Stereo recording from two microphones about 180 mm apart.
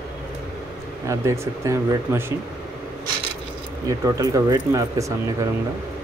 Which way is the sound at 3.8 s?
20° right (ahead or behind).